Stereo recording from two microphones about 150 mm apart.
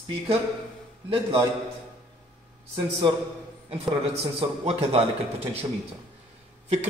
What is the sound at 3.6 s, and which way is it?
A man's voice, 40° right (ahead or behind).